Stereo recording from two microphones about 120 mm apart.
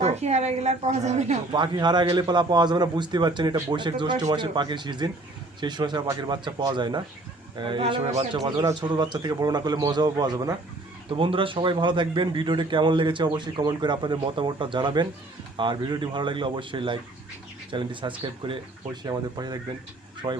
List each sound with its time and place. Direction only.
0.0 s a woman's voice: 65° right (ahead or behind)
1.5 s a man's voice: 40° right (ahead or behind)
11.2 s a man's voice: 45° right (ahead or behind)
19.0 s a man's voice: 35° right (ahead or behind)
20.2 s speech: 50° right (ahead or behind)